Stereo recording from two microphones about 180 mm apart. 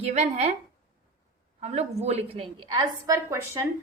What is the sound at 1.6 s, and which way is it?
A woman's voice, 35° right (ahead or behind).